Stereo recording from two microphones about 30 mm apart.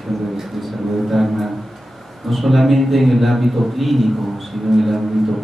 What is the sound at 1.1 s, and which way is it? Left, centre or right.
A man's voice, centre.